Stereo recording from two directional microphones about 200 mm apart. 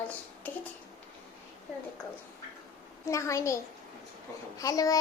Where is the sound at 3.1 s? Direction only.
15° left (ahead or behind).